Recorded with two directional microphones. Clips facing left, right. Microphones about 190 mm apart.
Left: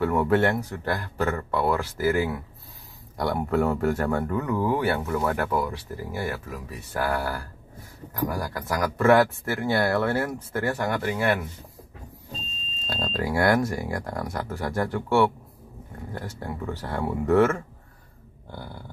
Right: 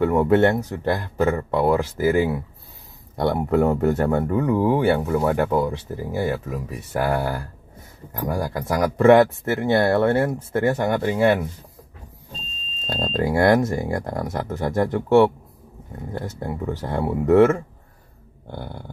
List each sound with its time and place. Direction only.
0.0 s speech: 20° right (ahead or behind)
12.8 s speech: 30° right (ahead or behind)
18.5 s a sound: 55° right (ahead or behind)